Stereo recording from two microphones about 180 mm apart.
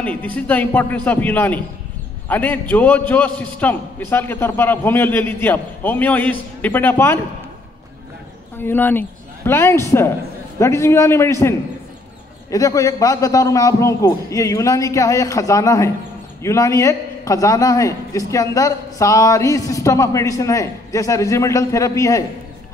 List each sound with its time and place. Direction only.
0.0 s a man's voice: 10° left (ahead or behind)
8.5 s a woman's voice: 10° left (ahead or behind)